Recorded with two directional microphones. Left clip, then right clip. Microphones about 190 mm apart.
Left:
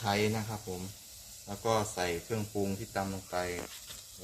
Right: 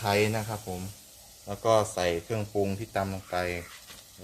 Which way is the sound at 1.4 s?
55° right (ahead or behind).